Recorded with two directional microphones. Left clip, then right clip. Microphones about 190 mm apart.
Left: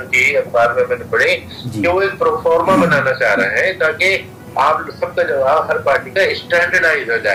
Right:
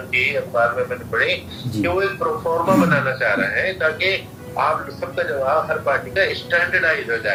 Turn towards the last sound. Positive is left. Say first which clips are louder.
# left 5 dB
turn(degrees=45)  # may be behind; listen again after turning